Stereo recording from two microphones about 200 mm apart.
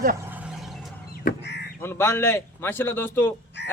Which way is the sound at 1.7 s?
10° left (ahead or behind).